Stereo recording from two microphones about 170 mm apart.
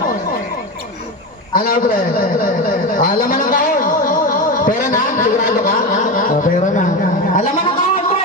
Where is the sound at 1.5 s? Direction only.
55° left (ahead or behind).